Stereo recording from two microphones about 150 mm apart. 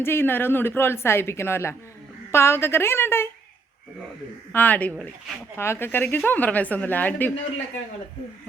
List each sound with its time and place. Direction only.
0.0 s speech: 15° left (ahead or behind)
4.5 s speech: 10° left (ahead or behind)